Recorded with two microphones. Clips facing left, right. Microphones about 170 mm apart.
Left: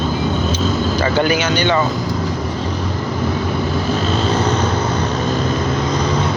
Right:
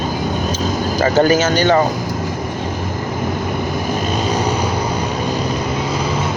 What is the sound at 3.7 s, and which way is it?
Vehicle, 15° right (ahead or behind).